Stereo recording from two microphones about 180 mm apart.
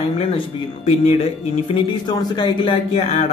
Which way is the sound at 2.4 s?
30° left (ahead or behind).